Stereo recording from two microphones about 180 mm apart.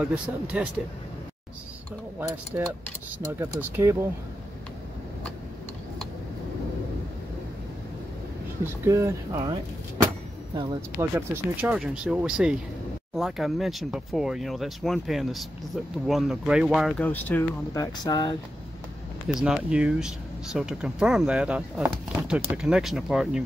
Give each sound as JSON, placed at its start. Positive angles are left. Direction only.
{"t": 0.0, "sound": "speech", "side_deg": -5}
{"t": 2.1, "sound": "speech", "side_deg": -15}
{"t": 8.8, "sound": "speech", "side_deg": -15}
{"t": 11.0, "sound": "speech", "side_deg": -10}
{"t": 17.1, "sound": "speech", "side_deg": 10}
{"t": 17.9, "sound": "speech", "side_deg": 20}
{"t": 19.2, "sound": "speech", "side_deg": -5}